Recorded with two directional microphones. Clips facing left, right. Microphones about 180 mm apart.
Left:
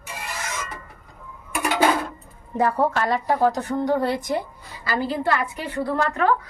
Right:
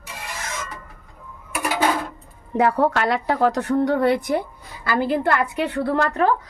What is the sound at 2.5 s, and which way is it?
A woman's voice, 70° right (ahead or behind).